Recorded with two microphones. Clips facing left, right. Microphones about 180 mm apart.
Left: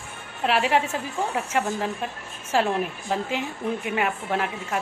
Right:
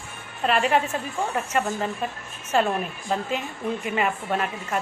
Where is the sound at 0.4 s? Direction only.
10° left (ahead or behind).